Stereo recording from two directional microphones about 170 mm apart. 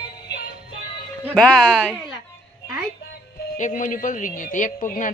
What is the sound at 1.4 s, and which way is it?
Speech, 5° left (ahead or behind).